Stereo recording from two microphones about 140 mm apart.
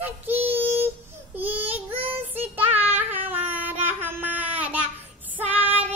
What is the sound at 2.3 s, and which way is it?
Child singing, 10° right (ahead or behind).